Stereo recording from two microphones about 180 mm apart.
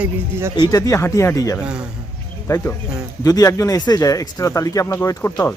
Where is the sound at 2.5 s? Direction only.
15° left (ahead or behind).